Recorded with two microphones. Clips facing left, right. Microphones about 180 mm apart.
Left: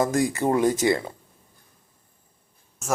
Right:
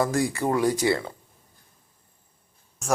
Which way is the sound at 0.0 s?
20° left (ahead or behind).